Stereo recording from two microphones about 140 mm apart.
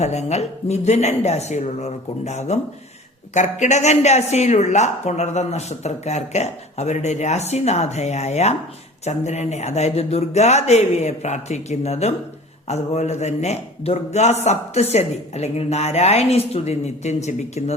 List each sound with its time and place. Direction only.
0.0 s speech: 55° left (ahead or behind)